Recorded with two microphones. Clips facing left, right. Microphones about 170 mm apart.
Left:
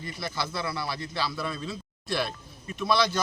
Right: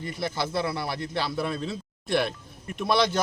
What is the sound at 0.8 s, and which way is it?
A man's voice, 55° right (ahead or behind).